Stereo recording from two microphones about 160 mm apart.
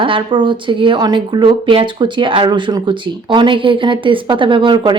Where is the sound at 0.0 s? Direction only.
30° right (ahead or behind).